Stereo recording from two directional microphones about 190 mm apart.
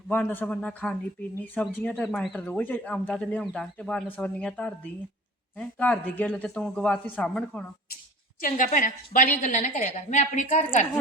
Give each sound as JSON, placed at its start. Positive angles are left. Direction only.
{"t": 0.1, "sound": "speech", "side_deg": 10}
{"t": 8.4, "sound": "a woman's voice", "side_deg": 45}